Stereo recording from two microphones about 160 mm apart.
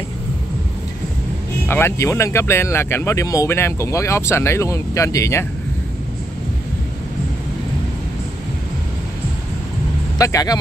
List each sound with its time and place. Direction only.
1.7 s speech: 15° left (ahead or behind)
10.1 s speech: 20° left (ahead or behind)